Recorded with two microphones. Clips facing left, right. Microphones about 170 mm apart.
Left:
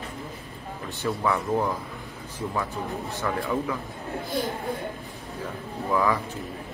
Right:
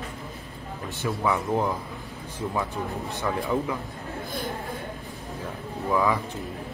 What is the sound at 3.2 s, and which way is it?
Speech, 15° right (ahead or behind).